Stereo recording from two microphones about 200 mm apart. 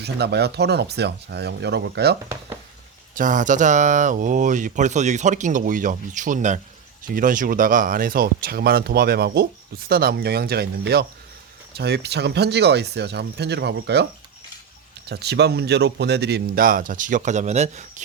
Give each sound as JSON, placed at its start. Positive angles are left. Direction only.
{"t": 0.0, "sound": "speech", "side_deg": -55}
{"t": 3.2, "sound": "speech", "side_deg": -40}
{"t": 15.1, "sound": "speech", "side_deg": -55}